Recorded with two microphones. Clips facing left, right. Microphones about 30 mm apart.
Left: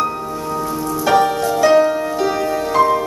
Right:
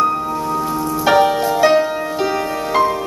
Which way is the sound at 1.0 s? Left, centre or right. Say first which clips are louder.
Right 1 dB; centre.